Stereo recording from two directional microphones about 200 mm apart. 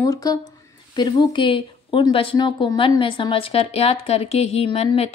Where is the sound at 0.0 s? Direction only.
15° left (ahead or behind).